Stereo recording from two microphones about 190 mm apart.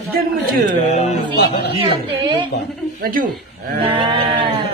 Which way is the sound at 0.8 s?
35° left (ahead or behind).